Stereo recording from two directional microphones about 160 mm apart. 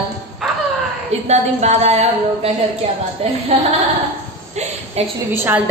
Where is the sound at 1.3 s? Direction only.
45° right (ahead or behind).